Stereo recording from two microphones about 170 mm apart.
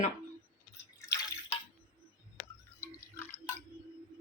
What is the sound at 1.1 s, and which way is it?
Drip, 20° left (ahead or behind).